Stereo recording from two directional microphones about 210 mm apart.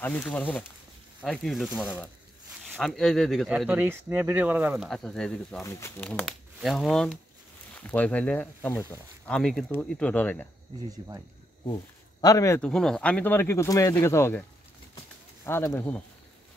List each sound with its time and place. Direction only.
0.0 s speech: 5° left (ahead or behind)
10.9 s speech: 15° right (ahead or behind)
11.6 s speech: 20° left (ahead or behind)
12.6 s speech: 5° left (ahead or behind)
15.4 s speech: 10° left (ahead or behind)